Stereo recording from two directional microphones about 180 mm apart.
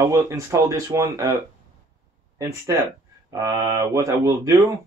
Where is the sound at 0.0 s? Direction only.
15° right (ahead or behind).